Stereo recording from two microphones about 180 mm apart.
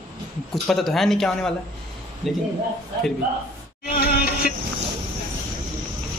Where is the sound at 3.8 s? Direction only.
55° left (ahead or behind).